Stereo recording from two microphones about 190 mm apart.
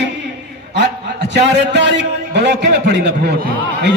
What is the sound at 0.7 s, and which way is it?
A man's voice, 65° right (ahead or behind).